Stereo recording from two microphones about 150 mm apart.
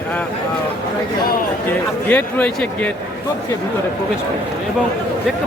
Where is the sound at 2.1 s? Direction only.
10° left (ahead or behind).